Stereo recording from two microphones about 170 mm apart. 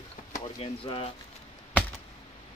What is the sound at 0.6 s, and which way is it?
Speech, 35° left (ahead or behind).